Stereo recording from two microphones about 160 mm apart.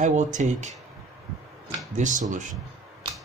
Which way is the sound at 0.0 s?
50° right (ahead or behind).